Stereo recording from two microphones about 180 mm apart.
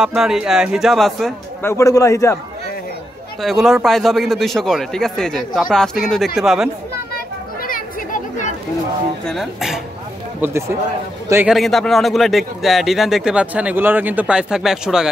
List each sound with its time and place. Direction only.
0.0 s speech: 5° right (ahead or behind)
1.6 s a man's voice: 15° left (ahead or behind)
3.4 s speech: centre (ahead or behind)
7.6 s chatter: 50° left (ahead or behind)
9.2 s speech: centre (ahead or behind)
11.4 s speech: centre (ahead or behind)